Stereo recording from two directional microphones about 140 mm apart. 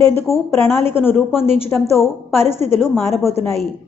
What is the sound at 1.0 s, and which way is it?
A woman's voice, 5° right (ahead or behind).